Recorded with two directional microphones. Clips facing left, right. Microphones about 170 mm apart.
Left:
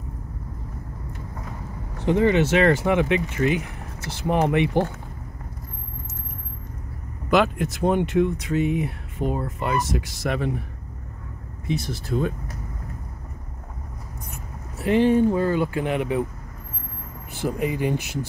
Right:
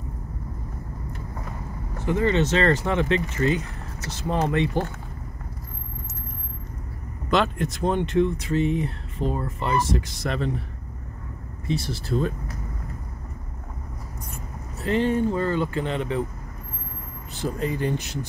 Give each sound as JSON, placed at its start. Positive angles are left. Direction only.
{"t": 2.0, "sound": "speech", "side_deg": 15}
{"t": 7.2, "sound": "speech", "side_deg": 5}
{"t": 11.6, "sound": "speech", "side_deg": 0}
{"t": 14.3, "sound": "speech", "side_deg": 15}
{"t": 17.4, "sound": "speech", "side_deg": 15}